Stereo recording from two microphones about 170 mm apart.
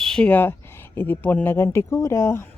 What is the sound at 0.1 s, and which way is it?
Speech, 10° left (ahead or behind).